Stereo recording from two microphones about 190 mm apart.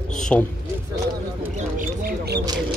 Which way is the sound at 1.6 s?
50° right (ahead or behind).